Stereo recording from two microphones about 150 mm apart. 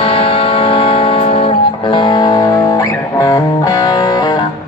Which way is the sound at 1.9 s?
30° left (ahead or behind).